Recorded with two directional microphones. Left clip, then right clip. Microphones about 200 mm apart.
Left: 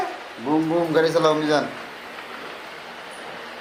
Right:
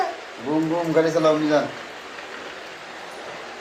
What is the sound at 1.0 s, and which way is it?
Speech, 45° left (ahead or behind).